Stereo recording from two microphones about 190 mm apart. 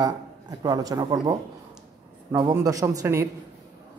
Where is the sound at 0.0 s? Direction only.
20° right (ahead or behind).